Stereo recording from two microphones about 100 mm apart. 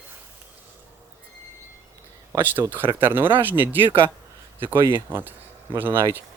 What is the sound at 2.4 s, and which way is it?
Speech, 20° right (ahead or behind).